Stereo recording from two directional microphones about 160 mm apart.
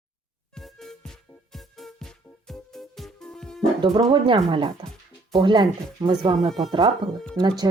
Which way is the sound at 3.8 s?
30° right (ahead or behind).